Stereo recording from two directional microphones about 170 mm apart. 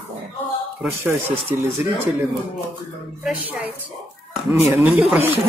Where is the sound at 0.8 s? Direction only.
15° right (ahead or behind).